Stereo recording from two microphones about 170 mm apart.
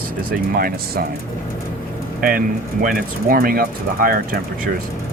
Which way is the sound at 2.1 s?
55° right (ahead or behind).